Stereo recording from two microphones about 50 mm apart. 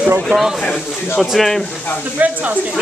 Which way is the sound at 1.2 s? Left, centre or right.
Centre.